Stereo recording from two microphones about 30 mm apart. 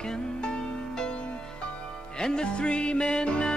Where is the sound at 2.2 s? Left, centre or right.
Left.